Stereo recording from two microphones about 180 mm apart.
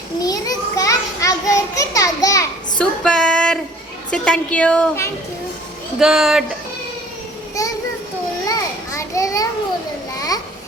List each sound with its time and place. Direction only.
0.2 s children playing: 20° left (ahead or behind)
2.7 s female singing: 5° left (ahead or behind)
4.1 s a woman's voice: 5° left (ahead or behind)
6.0 s speech: centre (ahead or behind)
7.6 s a sound: 20° left (ahead or behind)
8.4 s children playing: 15° left (ahead or behind)
10.2 s a sound: 20° left (ahead or behind)